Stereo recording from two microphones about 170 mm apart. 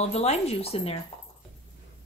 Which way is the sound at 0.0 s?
40° left (ahead or behind).